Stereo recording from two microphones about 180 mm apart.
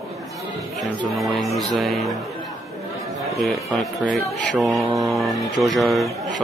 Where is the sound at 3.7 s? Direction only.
Centre (ahead or behind).